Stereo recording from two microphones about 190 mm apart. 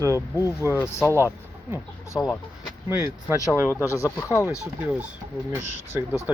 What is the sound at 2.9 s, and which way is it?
Speech, 15° right (ahead or behind).